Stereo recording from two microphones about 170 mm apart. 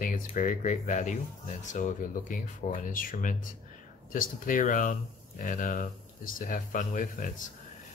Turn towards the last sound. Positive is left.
turn(degrees=50)  # may be behind; listen again after turning